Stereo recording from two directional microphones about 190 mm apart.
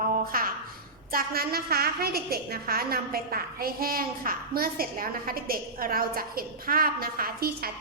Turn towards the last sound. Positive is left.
turn(degrees=-50)  # may be behind; listen again after turning